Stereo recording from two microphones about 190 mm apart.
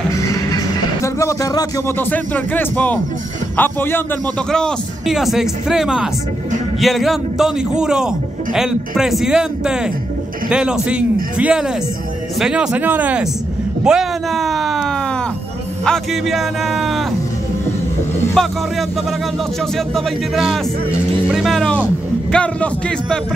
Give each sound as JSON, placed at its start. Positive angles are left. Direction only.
{"t": 0.1, "sound": "music", "side_deg": 15}
{"t": 1.0, "sound": "speech", "side_deg": 15}
{"t": 13.8, "sound": "a sound", "side_deg": 0}
{"t": 15.8, "sound": "speech", "side_deg": 0}
{"t": 18.3, "sound": "speech", "side_deg": 0}
{"t": 19.9, "sound": "speech", "side_deg": 0}